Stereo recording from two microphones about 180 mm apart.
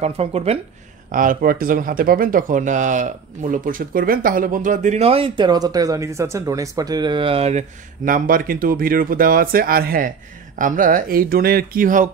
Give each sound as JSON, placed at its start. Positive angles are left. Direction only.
{"t": 0.0, "sound": "speech", "side_deg": -35}
{"t": 1.1, "sound": "speech", "side_deg": -50}